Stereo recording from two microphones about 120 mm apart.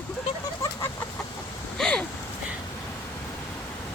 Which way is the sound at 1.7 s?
5° left (ahead or behind).